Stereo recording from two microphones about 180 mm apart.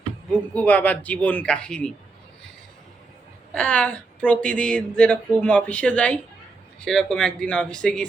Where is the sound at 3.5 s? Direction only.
5° left (ahead or behind).